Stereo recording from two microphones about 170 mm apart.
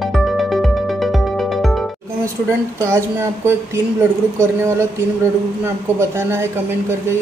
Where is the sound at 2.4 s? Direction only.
15° right (ahead or behind).